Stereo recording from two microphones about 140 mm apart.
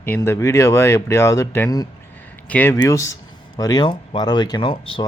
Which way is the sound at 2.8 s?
20° left (ahead or behind).